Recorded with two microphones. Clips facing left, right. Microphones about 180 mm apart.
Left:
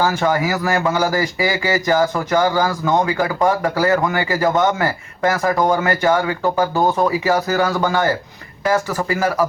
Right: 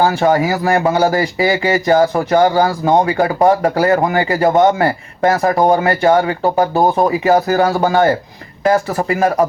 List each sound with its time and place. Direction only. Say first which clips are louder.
0.0 s speech: right 4 dB; 30° right (ahead or behind)